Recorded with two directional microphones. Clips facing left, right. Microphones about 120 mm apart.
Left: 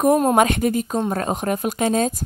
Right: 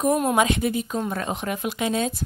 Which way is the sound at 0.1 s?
40° left (ahead or behind).